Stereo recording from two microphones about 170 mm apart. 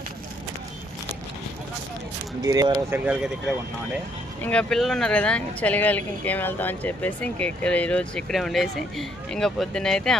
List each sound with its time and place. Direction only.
2.4 s speech: 20° right (ahead or behind)
3.0 s speech: 5° right (ahead or behind)
4.4 s speech: 5° left (ahead or behind)